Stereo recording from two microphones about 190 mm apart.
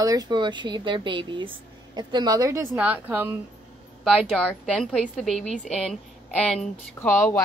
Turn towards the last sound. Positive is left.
turn(degrees=5)  # may be behind; listen again after turning